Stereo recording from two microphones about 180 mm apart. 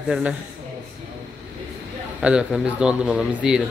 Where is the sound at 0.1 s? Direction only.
5° right (ahead or behind).